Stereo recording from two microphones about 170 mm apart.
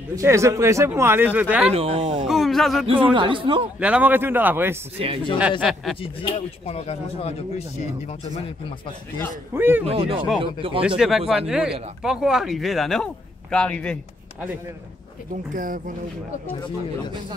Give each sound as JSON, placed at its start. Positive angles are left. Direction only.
{"t": 0.1, "sound": "speech", "side_deg": -15}
{"t": 1.7, "sound": "speech", "side_deg": -35}
{"t": 2.2, "sound": "speech", "side_deg": 0}
{"t": 2.9, "sound": "speech", "side_deg": -30}
{"t": 3.8, "sound": "speech", "side_deg": -10}
{"t": 4.9, "sound": "speech", "side_deg": -35}
{"t": 5.6, "sound": "speech", "side_deg": 0}
{"t": 5.9, "sound": "speech", "side_deg": 30}
{"t": 9.5, "sound": "speech", "side_deg": -10}
{"t": 9.8, "sound": "speech", "side_deg": -35}
{"t": 11.0, "sound": "speech", "side_deg": 0}
{"t": 15.5, "sound": "speech", "side_deg": -55}